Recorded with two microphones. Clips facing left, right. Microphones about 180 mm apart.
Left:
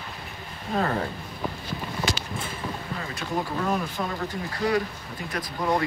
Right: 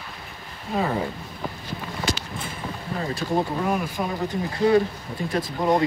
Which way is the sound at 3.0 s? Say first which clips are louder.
Right 7 dB; 35° right (ahead or behind).